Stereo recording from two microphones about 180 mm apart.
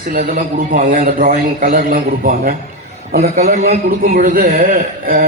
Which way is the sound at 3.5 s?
40° right (ahead or behind).